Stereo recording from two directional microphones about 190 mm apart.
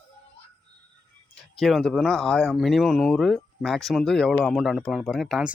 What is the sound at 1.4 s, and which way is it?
Speech, centre (ahead or behind).